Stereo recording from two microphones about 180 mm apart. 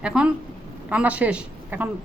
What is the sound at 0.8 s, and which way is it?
A woman's voice, 5° right (ahead or behind).